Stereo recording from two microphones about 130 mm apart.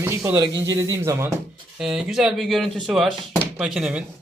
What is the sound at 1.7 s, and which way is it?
Speech, 5° right (ahead or behind).